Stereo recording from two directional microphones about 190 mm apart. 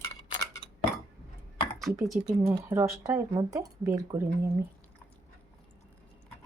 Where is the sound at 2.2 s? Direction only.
10° right (ahead or behind).